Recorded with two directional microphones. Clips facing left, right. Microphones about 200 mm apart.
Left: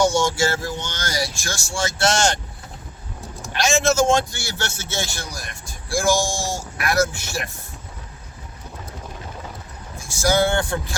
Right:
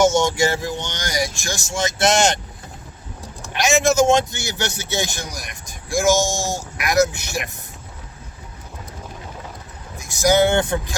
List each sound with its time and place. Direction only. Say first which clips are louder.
0.0 s a man's voice: right 2 dB; 20° right (ahead or behind)
3.6 s a man's voice: right 2 dB; 15° right (ahead or behind)
10.0 s a man's voice: right 3 dB; 20° right (ahead or behind)